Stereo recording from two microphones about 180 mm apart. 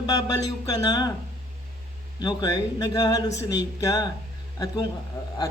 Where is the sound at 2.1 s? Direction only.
20° left (ahead or behind).